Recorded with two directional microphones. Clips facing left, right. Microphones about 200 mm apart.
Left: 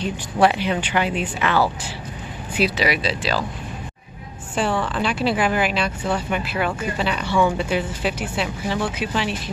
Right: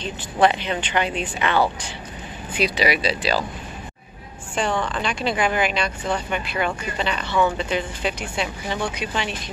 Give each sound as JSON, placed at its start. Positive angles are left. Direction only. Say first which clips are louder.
{"t": 0.0, "sound": "speech", "louder": "left 1 dB", "side_deg": 10}
{"t": 4.6, "sound": "speech", "louder": "left 2 dB", "side_deg": 5}